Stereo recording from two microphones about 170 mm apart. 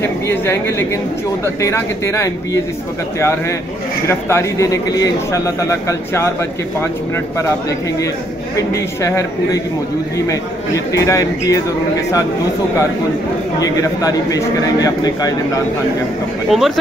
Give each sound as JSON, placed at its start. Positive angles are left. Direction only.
{"t": 0.0, "sound": "a man's voice", "side_deg": 15}
{"t": 8.5, "sound": "a man's voice", "side_deg": 15}
{"t": 13.6, "sound": "a man's voice", "side_deg": 20}
{"t": 16.4, "sound": "speech", "side_deg": 0}